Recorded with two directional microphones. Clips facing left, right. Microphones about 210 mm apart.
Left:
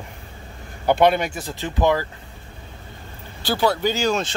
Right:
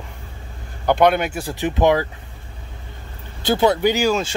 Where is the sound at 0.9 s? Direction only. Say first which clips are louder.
Right 1 dB; centre (ahead or behind); by 2.1 s 15° right (ahead or behind).